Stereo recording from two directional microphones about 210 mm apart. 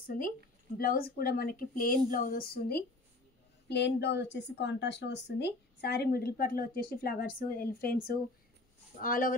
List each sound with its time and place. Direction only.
0.7 s speech: 45° left (ahead or behind)